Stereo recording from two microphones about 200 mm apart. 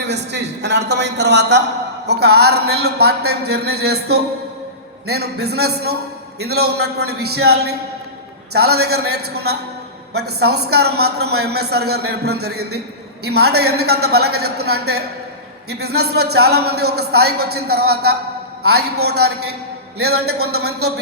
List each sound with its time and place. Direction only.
0.1 s a man's voice: 55° right (ahead or behind)